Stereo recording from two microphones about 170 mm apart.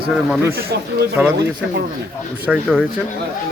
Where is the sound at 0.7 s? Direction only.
75° right (ahead or behind).